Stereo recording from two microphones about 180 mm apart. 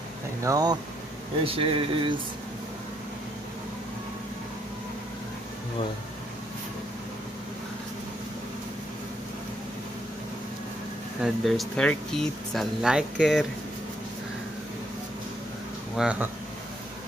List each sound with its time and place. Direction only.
0.4 s speech: 20° right (ahead or behind)
1.4 s speech: 30° right (ahead or behind)
11.2 s speech: centre (ahead or behind)
16.0 s speech: 5° right (ahead or behind)